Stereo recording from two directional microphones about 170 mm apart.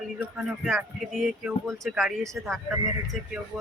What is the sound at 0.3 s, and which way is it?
Speech, centre (ahead or behind).